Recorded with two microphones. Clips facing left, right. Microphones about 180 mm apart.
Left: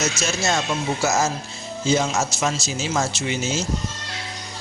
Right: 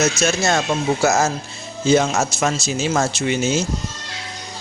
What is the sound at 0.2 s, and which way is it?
Speech, 55° right (ahead or behind).